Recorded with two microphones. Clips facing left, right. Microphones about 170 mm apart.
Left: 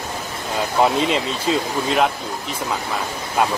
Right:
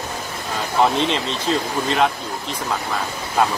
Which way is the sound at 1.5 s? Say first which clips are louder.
Left 1 dB; 5° left (ahead or behind).